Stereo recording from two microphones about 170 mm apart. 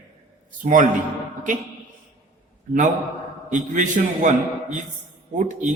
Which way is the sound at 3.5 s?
50° right (ahead or behind).